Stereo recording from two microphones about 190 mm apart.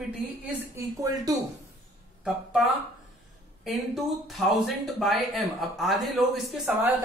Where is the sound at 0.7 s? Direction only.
15° right (ahead or behind).